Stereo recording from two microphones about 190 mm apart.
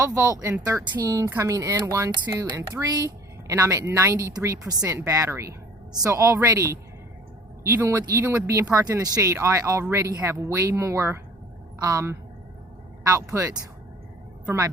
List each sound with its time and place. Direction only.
0.0 s a woman's voice: 15° right (ahead or behind)